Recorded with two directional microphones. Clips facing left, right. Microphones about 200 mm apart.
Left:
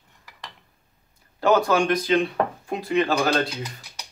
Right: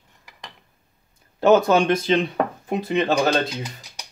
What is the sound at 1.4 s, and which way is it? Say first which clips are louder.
Speech: right 4 dB; 25° right (ahead or behind).